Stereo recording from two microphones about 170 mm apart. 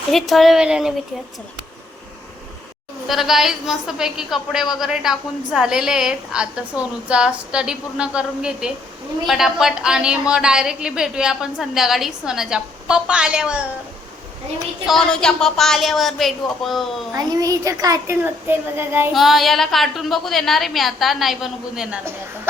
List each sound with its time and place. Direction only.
0.1 s a woman's voice: centre (ahead or behind)
3.1 s a woman's voice: centre (ahead or behind)
14.8 s a woman's voice: 5° left (ahead or behind)
17.2 s speech: 20° right (ahead or behind)
19.1 s a woman's voice: centre (ahead or behind)